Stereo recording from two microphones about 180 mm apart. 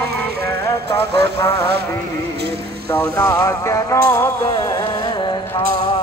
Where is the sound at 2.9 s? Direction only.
15° left (ahead or behind).